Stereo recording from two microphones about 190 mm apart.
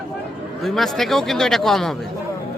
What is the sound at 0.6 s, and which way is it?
Speech, centre (ahead or behind).